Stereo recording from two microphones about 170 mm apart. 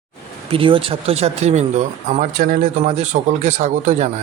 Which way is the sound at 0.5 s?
30° right (ahead or behind).